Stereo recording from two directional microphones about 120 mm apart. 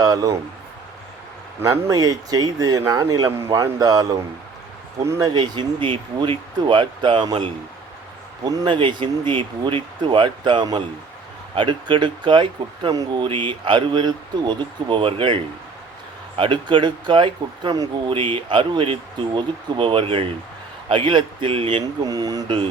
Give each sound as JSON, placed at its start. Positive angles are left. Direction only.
{"t": 0.0, "sound": "speech", "side_deg": -30}
{"t": 1.6, "sound": "speech", "side_deg": -30}
{"t": 5.3, "sound": "speech", "side_deg": -40}
{"t": 13.2, "sound": "speech", "side_deg": -45}
{"t": 16.4, "sound": "speech", "side_deg": -45}
{"t": 22.0, "sound": "speech", "side_deg": -30}